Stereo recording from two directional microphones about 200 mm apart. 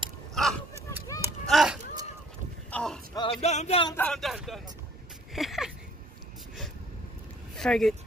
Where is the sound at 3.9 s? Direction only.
5° left (ahead or behind).